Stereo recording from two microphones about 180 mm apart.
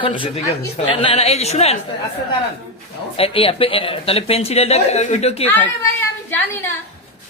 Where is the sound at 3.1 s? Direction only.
30° left (ahead or behind).